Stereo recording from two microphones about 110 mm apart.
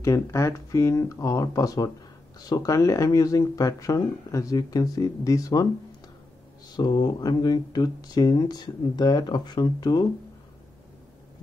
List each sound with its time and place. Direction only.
0.0 s speech: 30° left (ahead or behind)
6.8 s speech: 40° left (ahead or behind)